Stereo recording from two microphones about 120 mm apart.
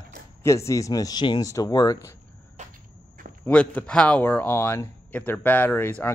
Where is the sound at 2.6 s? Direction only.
75° right (ahead or behind).